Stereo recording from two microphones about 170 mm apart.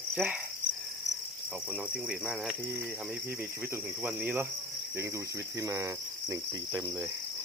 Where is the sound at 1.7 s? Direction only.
5° right (ahead or behind).